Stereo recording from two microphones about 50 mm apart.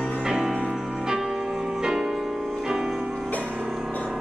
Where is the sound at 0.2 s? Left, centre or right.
Centre.